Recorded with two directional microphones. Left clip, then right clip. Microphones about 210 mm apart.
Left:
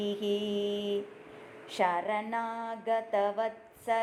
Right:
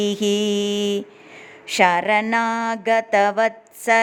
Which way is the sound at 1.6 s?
40° right (ahead or behind).